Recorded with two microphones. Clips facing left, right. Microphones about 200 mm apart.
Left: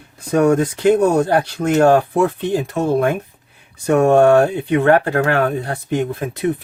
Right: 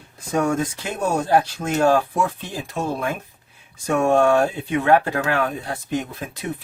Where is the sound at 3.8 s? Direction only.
55° left (ahead or behind).